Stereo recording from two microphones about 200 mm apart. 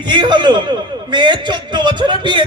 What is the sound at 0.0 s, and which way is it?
A man's voice, 20° right (ahead or behind).